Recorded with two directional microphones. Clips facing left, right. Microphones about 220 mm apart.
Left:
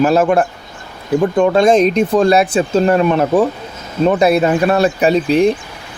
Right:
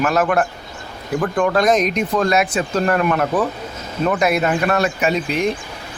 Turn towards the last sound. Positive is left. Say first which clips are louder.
# left 7 dB
turn(degrees=35)  # may be behind; listen again after turning